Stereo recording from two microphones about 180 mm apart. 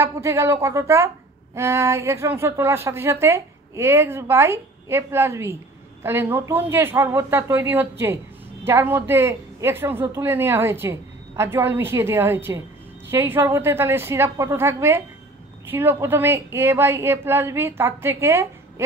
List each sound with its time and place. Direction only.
0.0 s speech: 15° right (ahead or behind)